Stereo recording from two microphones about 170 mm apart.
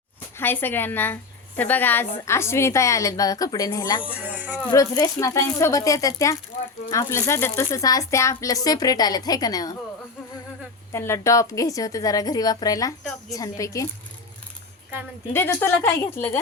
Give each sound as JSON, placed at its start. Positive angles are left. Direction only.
{"t": 0.3, "sound": "a woman's voice", "side_deg": 10}
{"t": 4.0, "sound": "speech", "side_deg": -10}
{"t": 4.7, "sound": "speech", "side_deg": 20}
{"t": 10.9, "sound": "speech", "side_deg": 15}
{"t": 15.3, "sound": "a woman's voice", "side_deg": 15}